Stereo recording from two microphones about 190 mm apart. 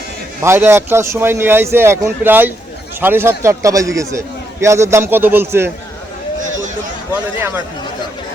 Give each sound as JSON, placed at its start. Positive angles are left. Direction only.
{"t": 0.4, "sound": "a man's voice", "side_deg": -15}
{"t": 7.1, "sound": "a man's voice", "side_deg": -10}